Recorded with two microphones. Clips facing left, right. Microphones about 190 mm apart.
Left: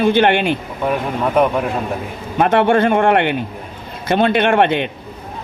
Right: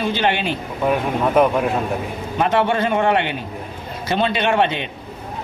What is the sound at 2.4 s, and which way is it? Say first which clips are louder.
A man's voice: left 5 dB; 55° left (ahead or behind).